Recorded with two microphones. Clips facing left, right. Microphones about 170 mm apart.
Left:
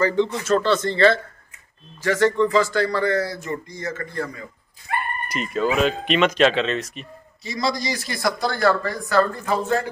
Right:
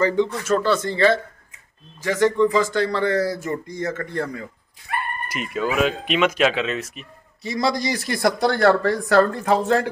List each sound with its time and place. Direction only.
0.0 s a man's voice: 15° right (ahead or behind); by 3.3 s 35° right (ahead or behind)
3.4 s speech: 55° right (ahead or behind)
5.3 s speech: 5° right (ahead or behind)
7.4 s speech: 60° right (ahead or behind)